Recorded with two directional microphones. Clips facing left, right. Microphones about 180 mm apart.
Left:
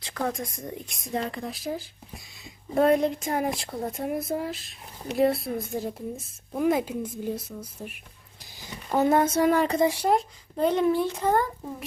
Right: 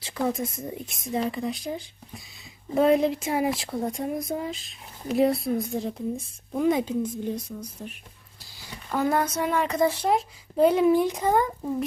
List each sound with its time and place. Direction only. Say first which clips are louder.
0.0 s a woman's voice: right 3 dB; 5° right (ahead or behind)
8.9 s speech: left 3 dB; 20° left (ahead or behind)
9.4 s speech: left 4 dB; 35° left (ahead or behind)
9.8 s speech: even; 10° left (ahead or behind)
10.1 s speech: left 1 dB; 5° right (ahead or behind)